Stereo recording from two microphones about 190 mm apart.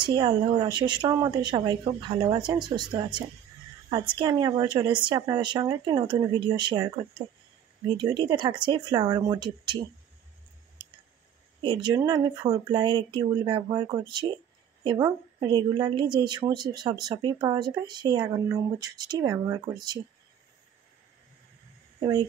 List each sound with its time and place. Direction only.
0.0 s speech: 25° right (ahead or behind)
3.9 s speech: 25° right (ahead or behind)
8.0 s speech: 20° right (ahead or behind)
11.6 s a woman's voice: 25° right (ahead or behind)